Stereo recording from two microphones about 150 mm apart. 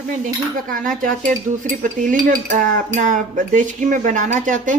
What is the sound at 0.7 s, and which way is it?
Cutlery, 65° right (ahead or behind).